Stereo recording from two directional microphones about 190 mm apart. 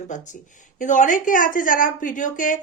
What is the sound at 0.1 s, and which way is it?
A woman's voice, 40° left (ahead or behind).